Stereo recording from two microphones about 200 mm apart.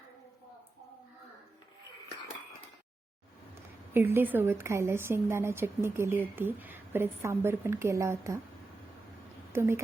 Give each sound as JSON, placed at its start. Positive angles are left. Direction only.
{"t": 3.9, "sound": "a woman's voice", "side_deg": -10}
{"t": 9.5, "sound": "a woman's voice", "side_deg": -15}